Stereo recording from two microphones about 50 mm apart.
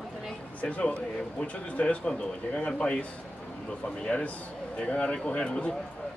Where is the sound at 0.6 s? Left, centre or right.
Left.